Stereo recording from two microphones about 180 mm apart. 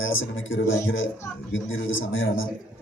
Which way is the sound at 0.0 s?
90° left.